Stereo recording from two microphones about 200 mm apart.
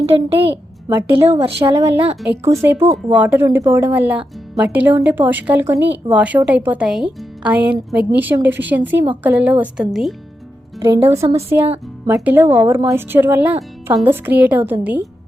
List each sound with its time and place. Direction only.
0.0 s a woman's voice: 30° right (ahead or behind)
1.6 s speech: 15° right (ahead or behind)
10.8 s a woman's voice: 15° right (ahead or behind)